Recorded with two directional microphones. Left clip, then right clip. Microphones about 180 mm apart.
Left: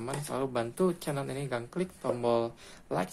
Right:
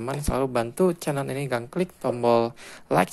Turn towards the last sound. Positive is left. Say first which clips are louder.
# right 11 dB
turn(degrees=-35)  # may be behind; listen again after turning